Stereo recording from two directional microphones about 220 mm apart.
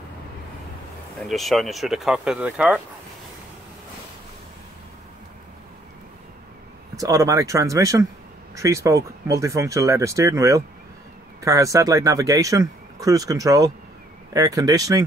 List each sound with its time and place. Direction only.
1.2 s speech: centre (ahead or behind)
7.0 s speech: 15° right (ahead or behind)